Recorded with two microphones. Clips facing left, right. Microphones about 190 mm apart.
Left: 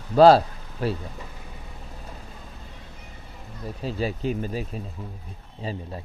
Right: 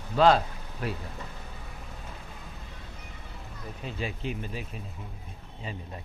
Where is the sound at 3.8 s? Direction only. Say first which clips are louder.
Left 7 dB; 35° left (ahead or behind).